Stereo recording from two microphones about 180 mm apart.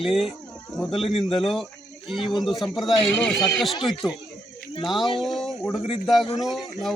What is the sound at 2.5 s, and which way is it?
A man's voice, centre (ahead or behind).